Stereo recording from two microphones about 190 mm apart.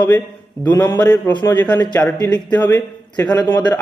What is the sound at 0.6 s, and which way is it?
Speech, 10° left (ahead or behind).